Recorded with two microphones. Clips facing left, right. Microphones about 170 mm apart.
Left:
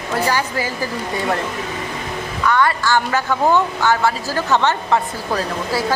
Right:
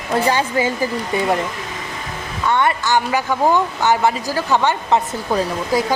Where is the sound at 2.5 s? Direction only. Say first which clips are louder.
Even; 20° right (ahead or behind).